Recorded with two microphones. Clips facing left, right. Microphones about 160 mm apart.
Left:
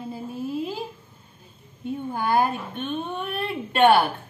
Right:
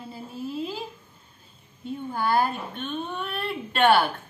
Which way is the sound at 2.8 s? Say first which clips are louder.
Left 3 dB; 45° left (ahead or behind).